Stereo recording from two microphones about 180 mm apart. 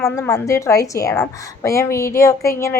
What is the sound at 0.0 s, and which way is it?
A woman's voice, 15° left (ahead or behind).